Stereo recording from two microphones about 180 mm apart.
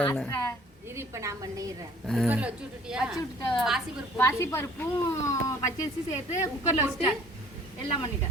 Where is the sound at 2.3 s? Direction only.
5° right (ahead or behind).